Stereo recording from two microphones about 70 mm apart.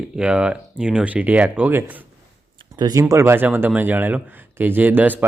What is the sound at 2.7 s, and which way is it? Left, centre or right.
Speech, right.